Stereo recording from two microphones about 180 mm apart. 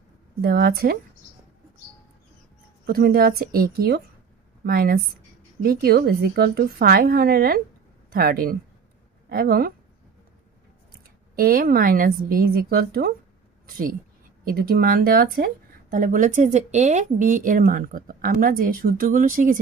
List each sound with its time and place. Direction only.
0.4 s a woman's voice: 55° right (ahead or behind)
2.8 s a woman's voice: 55° right (ahead or behind)
10.9 s speech: 55° right (ahead or behind)
14.4 s speech: 55° right (ahead or behind)